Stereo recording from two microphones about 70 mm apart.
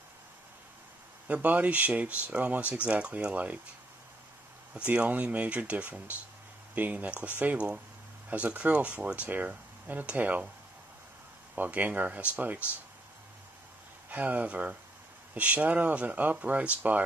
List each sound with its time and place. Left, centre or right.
1.2 s speech: right
4.7 s speech: centre
11.5 s speech: right
14.0 s speech: right